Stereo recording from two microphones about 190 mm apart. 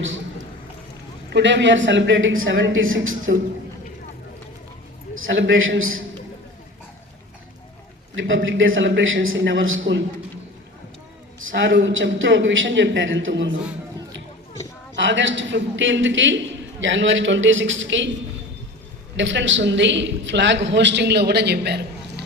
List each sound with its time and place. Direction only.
1.3 s a man's voice: 70° right (ahead or behind); by 3.3 s 90° right
5.2 s a man's voice: 85° right
8.1 s a man's voice: 75° right (ahead or behind)
11.3 s a man's voice: 85° right
14.9 s a man's voice: 75° right (ahead or behind)
19.1 s a man's voice: 75° right (ahead or behind)